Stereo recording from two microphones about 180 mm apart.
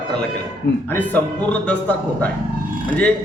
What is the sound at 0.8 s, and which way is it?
Speech, 10° left (ahead or behind).